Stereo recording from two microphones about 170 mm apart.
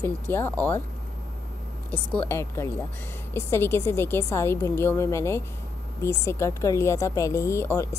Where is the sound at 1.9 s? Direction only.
10° left (ahead or behind).